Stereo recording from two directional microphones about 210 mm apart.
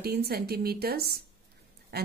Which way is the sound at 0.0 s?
50° right (ahead or behind).